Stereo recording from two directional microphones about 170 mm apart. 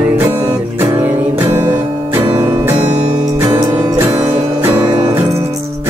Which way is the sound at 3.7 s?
15° right (ahead or behind).